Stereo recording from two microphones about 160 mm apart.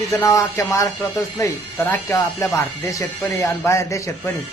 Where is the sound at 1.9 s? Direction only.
20° left (ahead or behind).